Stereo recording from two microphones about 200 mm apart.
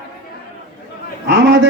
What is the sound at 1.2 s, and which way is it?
Speech, 60° right (ahead or behind).